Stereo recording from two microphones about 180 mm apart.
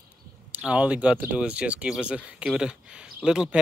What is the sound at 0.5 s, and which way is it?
Speech, 5° right (ahead or behind).